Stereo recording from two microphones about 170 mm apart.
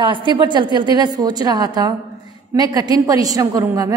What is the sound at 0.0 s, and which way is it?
A woman's voice, 30° right (ahead or behind).